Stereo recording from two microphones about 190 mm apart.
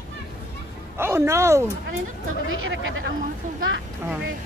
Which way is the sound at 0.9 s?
15° right (ahead or behind).